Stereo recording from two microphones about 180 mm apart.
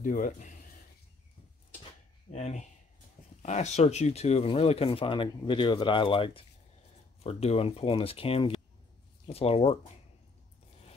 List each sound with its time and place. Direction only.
0.0 s speech: 45° left (ahead or behind)
2.3 s speech: 40° left (ahead or behind)